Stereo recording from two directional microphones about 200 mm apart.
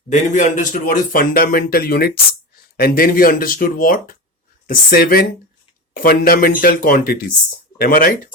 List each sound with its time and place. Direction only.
0.1 s speech: 35° left (ahead or behind)